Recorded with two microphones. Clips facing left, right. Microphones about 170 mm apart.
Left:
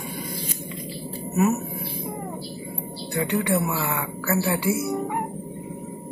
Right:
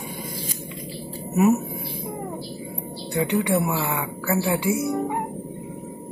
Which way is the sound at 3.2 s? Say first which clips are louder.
Right 2 dB; 15° right (ahead or behind).